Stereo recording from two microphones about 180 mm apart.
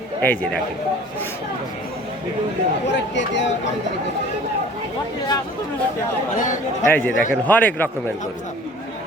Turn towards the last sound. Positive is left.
turn(degrees=10)  # may be behind; listen again after turning